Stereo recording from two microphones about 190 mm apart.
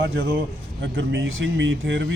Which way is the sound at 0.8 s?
70° right (ahead or behind).